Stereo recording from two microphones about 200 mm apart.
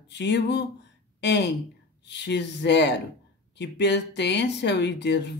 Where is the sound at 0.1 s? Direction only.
60° left (ahead or behind).